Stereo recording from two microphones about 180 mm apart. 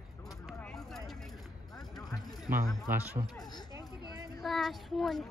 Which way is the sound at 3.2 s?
25° right (ahead or behind).